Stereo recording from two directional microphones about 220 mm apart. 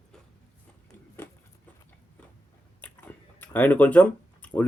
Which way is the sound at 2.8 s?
5° left (ahead or behind).